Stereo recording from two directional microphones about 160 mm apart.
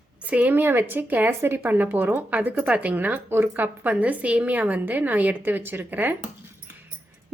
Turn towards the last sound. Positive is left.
turn(degrees=-10)  # may be behind; listen again after turning